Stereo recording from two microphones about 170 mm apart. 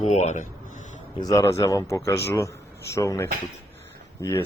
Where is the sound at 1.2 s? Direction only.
20° left (ahead or behind).